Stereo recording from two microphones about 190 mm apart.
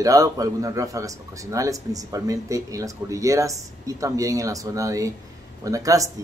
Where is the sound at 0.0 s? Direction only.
20° right (ahead or behind).